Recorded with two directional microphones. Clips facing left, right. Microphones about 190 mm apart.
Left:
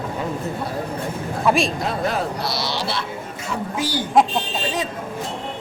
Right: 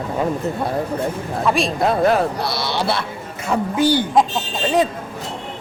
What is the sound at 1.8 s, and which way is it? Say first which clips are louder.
Speech: right 7 dB; 55° right (ahead or behind).